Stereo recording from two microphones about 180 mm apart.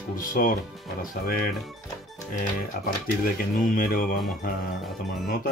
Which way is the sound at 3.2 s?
50° left (ahead or behind).